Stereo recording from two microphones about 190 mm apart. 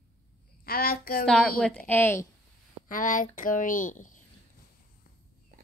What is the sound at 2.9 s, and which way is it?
Speech, 45° left (ahead or behind).